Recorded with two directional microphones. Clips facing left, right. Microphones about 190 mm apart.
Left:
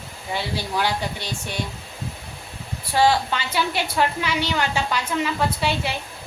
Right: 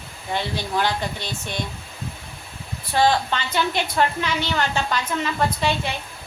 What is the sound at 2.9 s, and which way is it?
A woman's voice, 10° left (ahead or behind).